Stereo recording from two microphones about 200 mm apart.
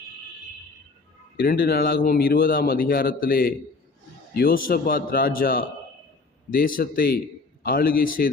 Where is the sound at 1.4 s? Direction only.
50° left (ahead or behind).